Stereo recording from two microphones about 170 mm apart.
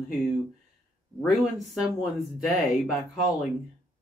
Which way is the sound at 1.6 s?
Centre (ahead or behind).